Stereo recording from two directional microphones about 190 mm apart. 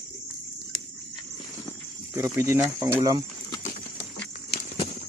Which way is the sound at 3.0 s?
25° right (ahead or behind).